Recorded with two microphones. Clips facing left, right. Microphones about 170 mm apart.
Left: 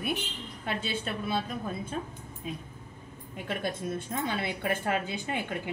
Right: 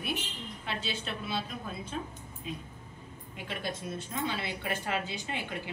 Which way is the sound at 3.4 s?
50° left (ahead or behind).